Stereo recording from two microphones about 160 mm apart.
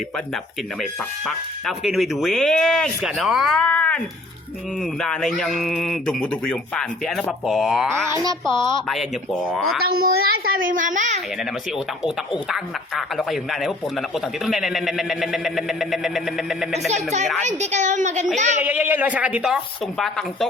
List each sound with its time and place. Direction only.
0.8 s speech: centre (ahead or behind)
8.1 s speech: 20° right (ahead or behind)
8.4 s a woman's voice: 30° left (ahead or behind)
8.9 s speech: centre (ahead or behind)
9.8 s a woman's voice: 70° right (ahead or behind); by 11.2 s 50° right (ahead or behind)
12.0 s speech: 5° right (ahead or behind)
16.9 s a woman's voice: 45° right (ahead or behind)
18.6 s speech: 10° right (ahead or behind)